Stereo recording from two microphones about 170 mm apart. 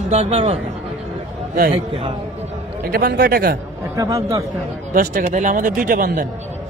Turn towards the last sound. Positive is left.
turn(degrees=-55)  # may be behind; listen again after turning